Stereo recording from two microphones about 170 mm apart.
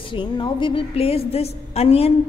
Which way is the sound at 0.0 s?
30° left (ahead or behind).